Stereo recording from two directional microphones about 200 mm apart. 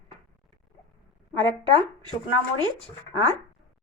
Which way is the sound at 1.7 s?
25° right (ahead or behind).